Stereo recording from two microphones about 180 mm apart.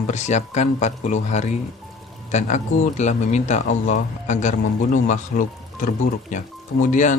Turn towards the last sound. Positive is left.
turn(degrees=45)  # may be behind; listen again after turning